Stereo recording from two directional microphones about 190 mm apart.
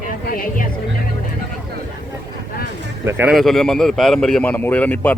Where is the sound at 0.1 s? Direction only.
50° left (ahead or behind).